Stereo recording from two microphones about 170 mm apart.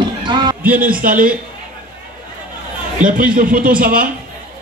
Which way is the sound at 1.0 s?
55° right (ahead or behind).